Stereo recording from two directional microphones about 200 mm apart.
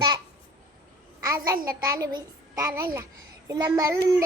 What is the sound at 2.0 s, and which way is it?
Child singing, 20° right (ahead or behind).